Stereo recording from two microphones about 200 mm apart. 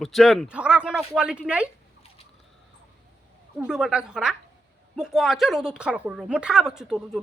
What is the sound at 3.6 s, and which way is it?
Speech, 5° right (ahead or behind).